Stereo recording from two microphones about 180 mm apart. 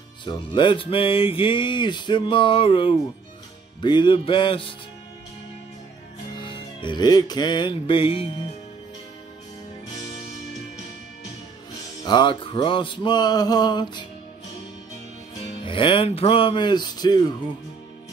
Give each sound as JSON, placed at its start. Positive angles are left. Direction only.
{"t": 0.2, "sound": "music", "side_deg": 25}
{"t": 6.4, "sound": "music", "side_deg": 25}
{"t": 12.0, "sound": "music", "side_deg": 25}
{"t": 15.6, "sound": "music", "side_deg": 30}